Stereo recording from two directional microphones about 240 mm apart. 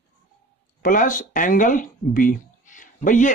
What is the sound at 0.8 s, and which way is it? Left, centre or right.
Speech, left.